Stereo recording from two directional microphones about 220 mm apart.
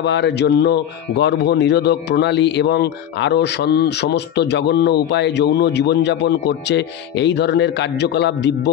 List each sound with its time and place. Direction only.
0.0 s speech: 50° left (ahead or behind)